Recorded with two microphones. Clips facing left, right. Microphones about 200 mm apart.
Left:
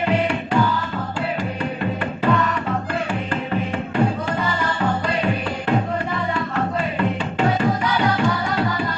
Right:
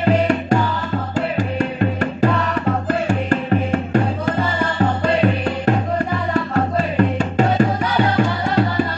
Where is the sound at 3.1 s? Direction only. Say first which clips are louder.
Right 6 dB; 45° right (ahead or behind).